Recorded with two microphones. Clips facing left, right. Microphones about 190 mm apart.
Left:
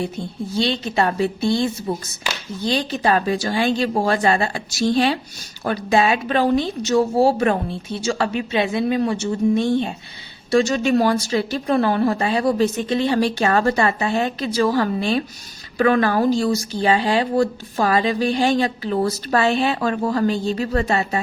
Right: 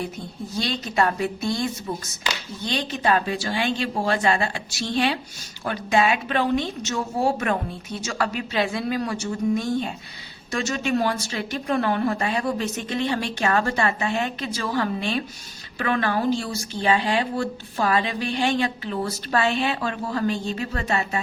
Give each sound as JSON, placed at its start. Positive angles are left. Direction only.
{"t": 0.5, "sound": "a woman's voice", "side_deg": 25}